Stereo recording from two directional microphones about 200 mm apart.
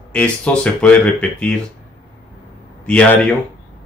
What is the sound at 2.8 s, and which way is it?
Speech, 5° left (ahead or behind).